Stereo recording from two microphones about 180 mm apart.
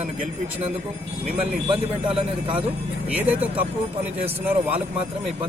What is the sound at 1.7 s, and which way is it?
Speech, 30° right (ahead or behind).